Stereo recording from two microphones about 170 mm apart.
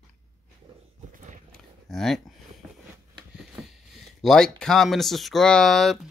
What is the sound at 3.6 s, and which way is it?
Speech, centre (ahead or behind).